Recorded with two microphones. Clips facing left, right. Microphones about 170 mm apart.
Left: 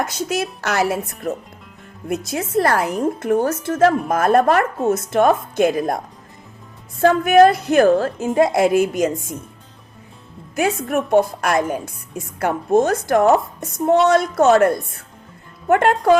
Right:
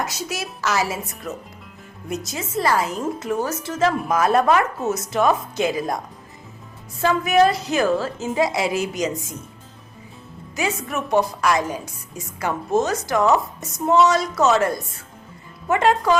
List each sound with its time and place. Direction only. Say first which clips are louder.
0.0 s a woman's voice: left 6 dB; 55° left (ahead or behind)
7.0 s a woman's voice: left 5 dB; 55° left (ahead or behind)
10.8 s a woman's voice: left 4 dB; 55° left (ahead or behind)